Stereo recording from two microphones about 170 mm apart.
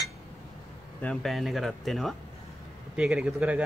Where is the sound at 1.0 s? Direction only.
Centre (ahead or behind).